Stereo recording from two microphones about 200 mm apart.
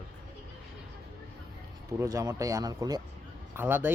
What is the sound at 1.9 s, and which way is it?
Speech, 15° right (ahead or behind).